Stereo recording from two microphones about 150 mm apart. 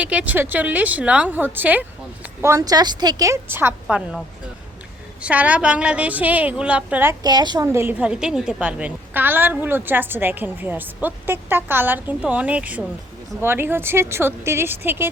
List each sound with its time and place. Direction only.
0.0 s a woman's voice: 10° right (ahead or behind)
5.2 s a woman's voice: 10° right (ahead or behind)